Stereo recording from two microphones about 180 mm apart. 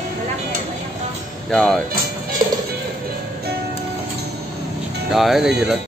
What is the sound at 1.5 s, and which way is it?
Speech, 5° left (ahead or behind).